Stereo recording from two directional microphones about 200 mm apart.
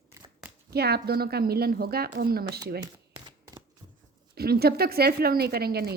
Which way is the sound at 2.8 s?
15° right (ahead or behind).